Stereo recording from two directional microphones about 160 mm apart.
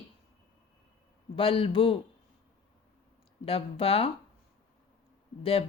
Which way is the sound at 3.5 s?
35° left (ahead or behind).